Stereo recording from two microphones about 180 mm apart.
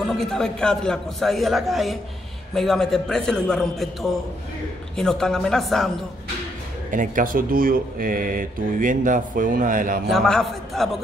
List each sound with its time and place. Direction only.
0.0 s a man's voice: centre (ahead or behind)
6.9 s speech: 45° right (ahead or behind)
10.0 s a man's voice: 5° left (ahead or behind)